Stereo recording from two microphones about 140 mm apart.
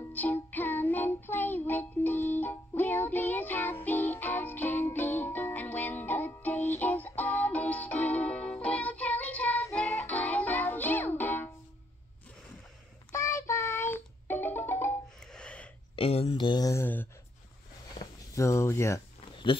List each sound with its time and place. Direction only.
0.1 s music: 10° left (ahead or behind)
13.1 s music: 20° left (ahead or behind)
15.3 s a sound: 10° left (ahead or behind)
16.0 s speech: 45° left (ahead or behind); by 16.8 s 25° left (ahead or behind)
16.8 s a sound: 15° left (ahead or behind)
18.3 s speech: 20° left (ahead or behind)